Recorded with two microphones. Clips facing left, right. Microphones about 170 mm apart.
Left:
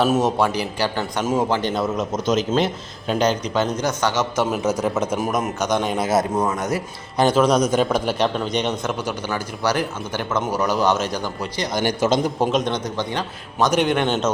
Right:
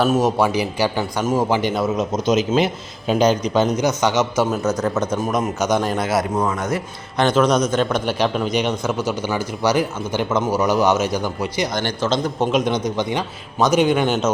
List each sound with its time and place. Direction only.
0.0 s a man's voice: centre (ahead or behind)
1.1 s a man's voice: centre (ahead or behind)
1.5 s a man's voice: 10° right (ahead or behind)
4.8 s a man's voice: 5° left (ahead or behind)
6.1 s a man's voice: 20° left (ahead or behind)
7.2 s a man's voice: 5° left (ahead or behind); by 11.7 s 10° right (ahead or behind)
11.7 s a man's voice: 10° left (ahead or behind)
12.5 s a man's voice: 5° right (ahead or behind)